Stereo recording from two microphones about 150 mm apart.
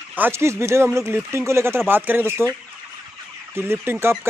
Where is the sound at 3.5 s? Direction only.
15° right (ahead or behind).